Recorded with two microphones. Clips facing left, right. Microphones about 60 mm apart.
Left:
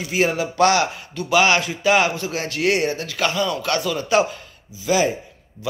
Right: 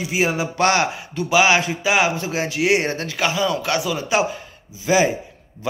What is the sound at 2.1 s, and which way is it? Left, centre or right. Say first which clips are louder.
Speech: right 2 dB; right.